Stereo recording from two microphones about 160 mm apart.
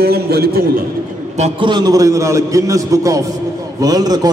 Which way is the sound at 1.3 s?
45° right (ahead or behind).